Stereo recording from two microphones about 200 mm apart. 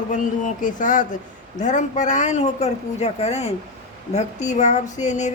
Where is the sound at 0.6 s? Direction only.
40° left (ahead or behind).